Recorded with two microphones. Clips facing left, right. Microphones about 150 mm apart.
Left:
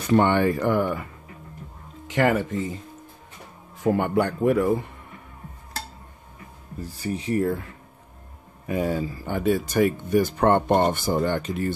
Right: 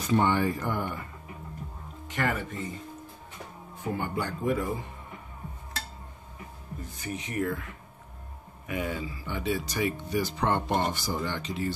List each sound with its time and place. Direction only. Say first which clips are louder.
0.0 s speech: left 6 dB; 65° left (ahead or behind); by 1.0 s 90° left
2.0 s speech: left 9 dB; 90° left
3.8 s speech: left 10 dB; 75° left (ahead or behind)
6.8 s speech: left 8 dB; 35° left (ahead or behind)
8.6 s speech: left 7 dB; 40° left (ahead or behind)